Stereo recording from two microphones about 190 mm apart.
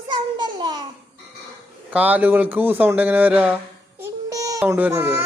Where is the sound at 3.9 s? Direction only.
15° right (ahead or behind).